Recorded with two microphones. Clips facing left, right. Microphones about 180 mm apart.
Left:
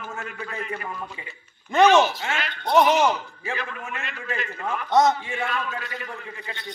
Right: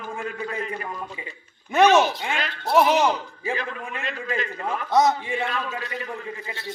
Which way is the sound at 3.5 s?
35° right (ahead or behind).